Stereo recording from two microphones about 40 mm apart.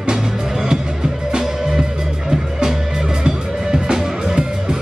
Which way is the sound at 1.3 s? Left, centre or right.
Centre.